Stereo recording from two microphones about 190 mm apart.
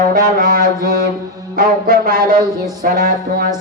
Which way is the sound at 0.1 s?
50° right (ahead or behind).